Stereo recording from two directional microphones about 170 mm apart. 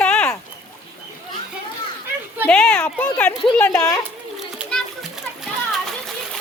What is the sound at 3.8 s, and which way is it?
Speech, 20° left (ahead or behind).